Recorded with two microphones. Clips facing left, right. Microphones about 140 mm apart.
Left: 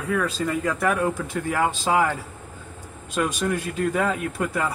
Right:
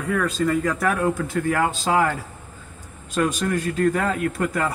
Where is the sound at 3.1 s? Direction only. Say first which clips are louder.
Right 2 dB; 10° left (ahead or behind).